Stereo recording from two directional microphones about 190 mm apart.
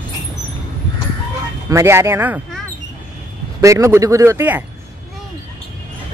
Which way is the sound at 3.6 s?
15° right (ahead or behind).